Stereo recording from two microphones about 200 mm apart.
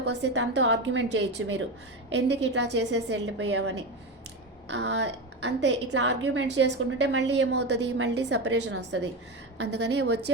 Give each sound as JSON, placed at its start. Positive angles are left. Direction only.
{"t": 0.0, "sound": "a woman's voice", "side_deg": -60}